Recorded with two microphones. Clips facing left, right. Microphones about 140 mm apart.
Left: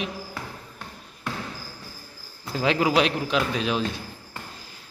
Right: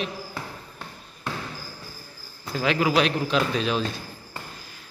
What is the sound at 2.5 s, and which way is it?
Speech, 25° left (ahead or behind).